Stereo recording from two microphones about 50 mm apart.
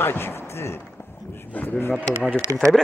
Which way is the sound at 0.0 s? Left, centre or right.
Left.